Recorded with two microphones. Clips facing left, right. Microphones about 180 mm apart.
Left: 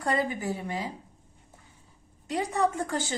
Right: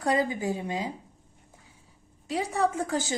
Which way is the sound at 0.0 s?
10° right (ahead or behind).